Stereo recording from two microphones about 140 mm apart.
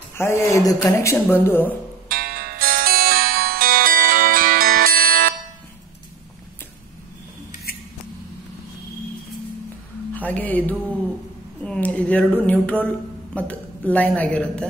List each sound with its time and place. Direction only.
0.2 s speech: 20° left (ahead or behind)
2.0 s music: 90° right
10.1 s speech: 10° left (ahead or behind)
11.6 s a sound: 5° left (ahead or behind)
12.4 s speech: 10° left (ahead or behind)